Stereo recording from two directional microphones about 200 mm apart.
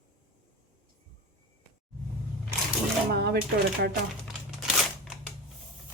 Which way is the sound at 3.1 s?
55° right (ahead or behind).